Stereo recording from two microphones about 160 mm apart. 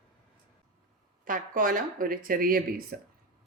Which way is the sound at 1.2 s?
60° right (ahead or behind).